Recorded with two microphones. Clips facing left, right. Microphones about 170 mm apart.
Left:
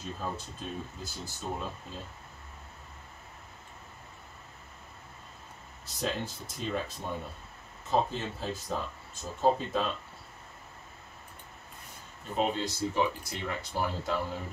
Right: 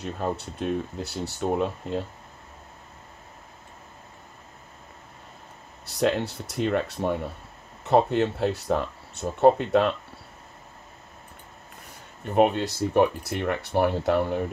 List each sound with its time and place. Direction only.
0.0 s speech: 70° right (ahead or behind)
5.9 s speech: 70° right (ahead or behind)
12.3 s speech: 65° right (ahead or behind)